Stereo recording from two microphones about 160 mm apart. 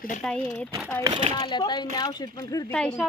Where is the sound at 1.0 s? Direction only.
35° right (ahead or behind).